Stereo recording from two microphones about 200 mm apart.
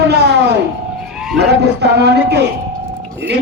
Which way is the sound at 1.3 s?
55° right (ahead or behind).